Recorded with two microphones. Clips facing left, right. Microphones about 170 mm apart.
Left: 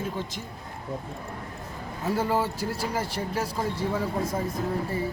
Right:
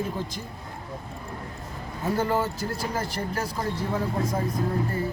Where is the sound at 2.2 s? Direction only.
30° left (ahead or behind).